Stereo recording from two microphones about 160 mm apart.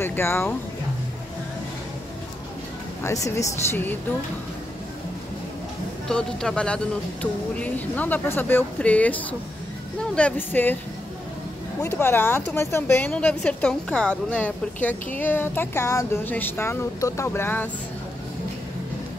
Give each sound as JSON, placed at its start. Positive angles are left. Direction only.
{"t": 0.0, "sound": "speech", "side_deg": 15}
{"t": 3.0, "sound": "speech", "side_deg": 20}
{"t": 6.0, "sound": "speech", "side_deg": 5}
{"t": 11.8, "sound": "speech", "side_deg": 15}